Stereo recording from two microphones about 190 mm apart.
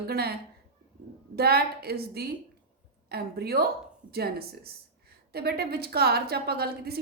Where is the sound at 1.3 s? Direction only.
55° right (ahead or behind).